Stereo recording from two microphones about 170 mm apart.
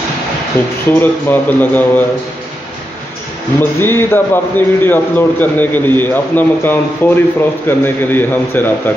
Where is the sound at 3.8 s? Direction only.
15° left (ahead or behind).